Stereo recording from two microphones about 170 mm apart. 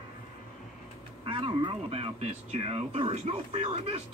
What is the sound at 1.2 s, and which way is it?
Speech, 30° right (ahead or behind).